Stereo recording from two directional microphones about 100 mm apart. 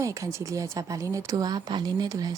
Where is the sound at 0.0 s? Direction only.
30° right (ahead or behind).